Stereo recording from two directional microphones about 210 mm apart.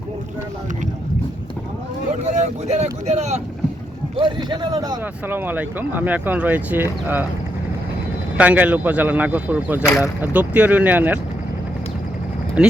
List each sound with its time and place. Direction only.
2.2 s speech: 35° right (ahead or behind); by 7.3 s 10° right (ahead or behind)
8.4 s speech: 5° right (ahead or behind)
12.6 s speech: 5° right (ahead or behind)